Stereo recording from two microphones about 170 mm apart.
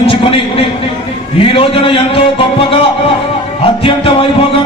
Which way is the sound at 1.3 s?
30° left (ahead or behind).